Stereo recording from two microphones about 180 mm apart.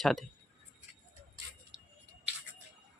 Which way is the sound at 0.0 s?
Centre (ahead or behind).